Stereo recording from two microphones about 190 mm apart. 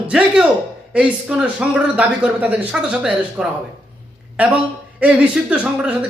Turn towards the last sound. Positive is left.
turn(degrees=-5)  # may be behind; listen again after turning